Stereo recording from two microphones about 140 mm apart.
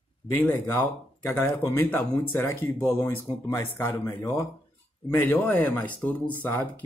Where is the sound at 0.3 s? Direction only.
15° left (ahead or behind).